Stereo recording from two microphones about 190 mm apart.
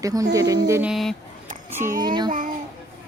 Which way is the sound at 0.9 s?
Centre (ahead or behind).